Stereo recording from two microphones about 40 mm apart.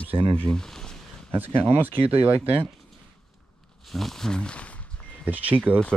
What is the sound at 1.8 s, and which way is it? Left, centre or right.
Speech, right.